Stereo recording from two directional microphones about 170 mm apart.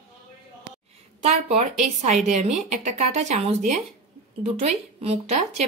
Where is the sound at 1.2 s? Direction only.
45° right (ahead or behind).